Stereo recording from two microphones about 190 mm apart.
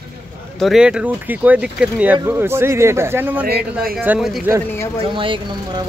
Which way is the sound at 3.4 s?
50° right (ahead or behind).